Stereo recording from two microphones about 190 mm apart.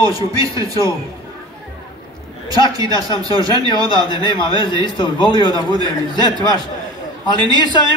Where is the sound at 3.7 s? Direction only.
25° left (ahead or behind).